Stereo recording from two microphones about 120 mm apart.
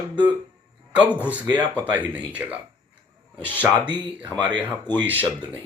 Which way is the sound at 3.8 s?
40° right (ahead or behind).